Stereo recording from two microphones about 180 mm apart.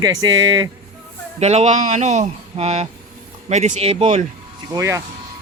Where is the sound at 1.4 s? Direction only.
40° right (ahead or behind).